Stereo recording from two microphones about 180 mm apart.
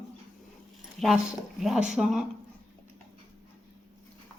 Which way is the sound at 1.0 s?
Centre (ahead or behind).